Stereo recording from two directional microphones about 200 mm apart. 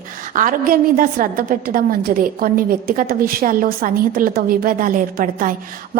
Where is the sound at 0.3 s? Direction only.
45° right (ahead or behind).